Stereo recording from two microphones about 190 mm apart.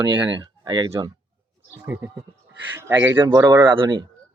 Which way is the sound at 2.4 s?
65° right (ahead or behind).